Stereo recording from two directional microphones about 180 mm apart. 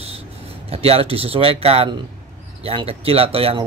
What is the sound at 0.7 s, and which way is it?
Speech, 35° right (ahead or behind).